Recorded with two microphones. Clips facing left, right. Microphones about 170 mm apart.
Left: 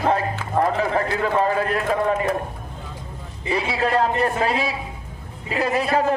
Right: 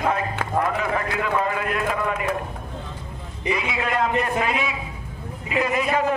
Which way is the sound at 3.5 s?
35° left (ahead or behind).